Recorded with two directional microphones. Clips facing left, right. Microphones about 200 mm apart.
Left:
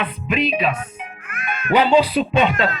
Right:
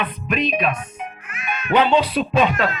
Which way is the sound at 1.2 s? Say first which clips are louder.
Left 3 dB; 55° left (ahead or behind).